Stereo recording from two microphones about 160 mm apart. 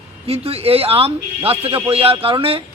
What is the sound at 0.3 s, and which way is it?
A man's voice, 40° right (ahead or behind).